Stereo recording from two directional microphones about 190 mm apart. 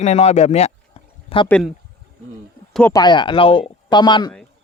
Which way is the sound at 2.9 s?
20° left (ahead or behind).